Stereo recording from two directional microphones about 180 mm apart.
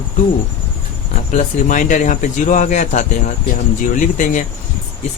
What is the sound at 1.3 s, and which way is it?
Speech, 45° left (ahead or behind).